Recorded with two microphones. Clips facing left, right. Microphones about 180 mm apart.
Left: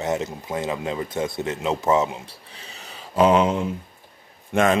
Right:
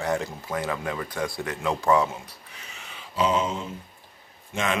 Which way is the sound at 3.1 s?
60° left (ahead or behind).